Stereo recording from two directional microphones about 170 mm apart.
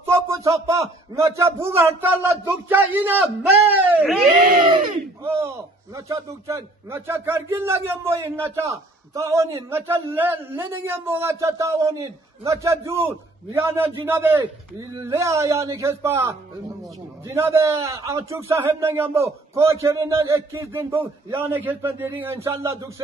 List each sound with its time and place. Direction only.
0.0 s a sound: 15° right (ahead or behind)
1.1 s a man's voice: 15° right (ahead or behind)
5.2 s a man's voice: 15° right (ahead or behind)